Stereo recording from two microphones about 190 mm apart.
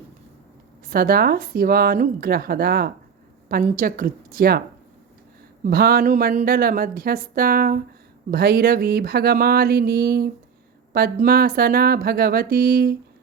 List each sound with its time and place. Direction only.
0.9 s a woman's voice: 50° right (ahead or behind)
5.6 s a woman's voice: 55° right (ahead or behind)